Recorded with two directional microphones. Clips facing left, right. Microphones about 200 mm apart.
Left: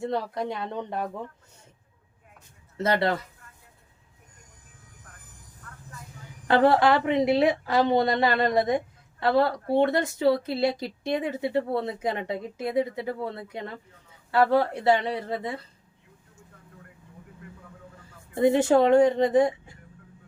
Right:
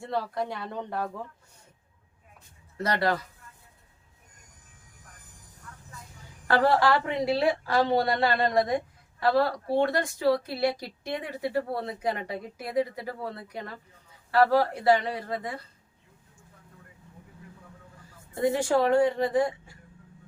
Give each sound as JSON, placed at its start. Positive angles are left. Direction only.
{"t": 0.0, "sound": "speech", "side_deg": 20}
{"t": 2.7, "sound": "speech", "side_deg": 25}
{"t": 6.5, "sound": "speech", "side_deg": 20}
{"t": 18.3, "sound": "speech", "side_deg": 20}